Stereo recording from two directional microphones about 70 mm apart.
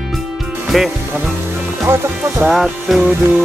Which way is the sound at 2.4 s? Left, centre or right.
Centre.